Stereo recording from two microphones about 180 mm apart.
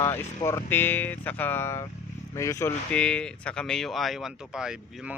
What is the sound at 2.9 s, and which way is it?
Speech, 5° left (ahead or behind).